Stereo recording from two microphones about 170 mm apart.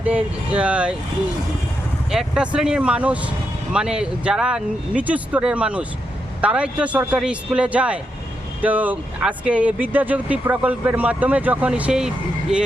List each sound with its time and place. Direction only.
0.0 s speech: 5° right (ahead or behind)
2.0 s speech: 5° right (ahead or behind)